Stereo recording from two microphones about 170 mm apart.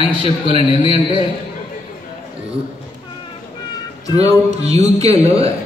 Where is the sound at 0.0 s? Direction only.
30° right (ahead or behind).